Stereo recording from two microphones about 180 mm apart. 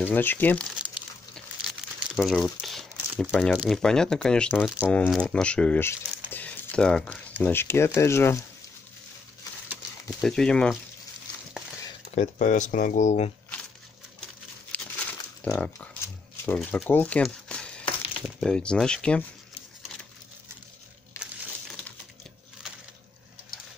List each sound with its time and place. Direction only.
0.0 s speech: 10° left (ahead or behind)
1.8 s crumpling: 5° right (ahead or behind)
2.1 s speech: centre (ahead or behind)
10.2 s speech: 5° left (ahead or behind)
12.2 s speech: 45° left (ahead or behind)
14.7 s crumpling: 5° left (ahead or behind)
16.5 s speech: centre (ahead or behind)
16.9 s crumpling: 10° left (ahead or behind)
18.2 s speech: 5° left (ahead or behind)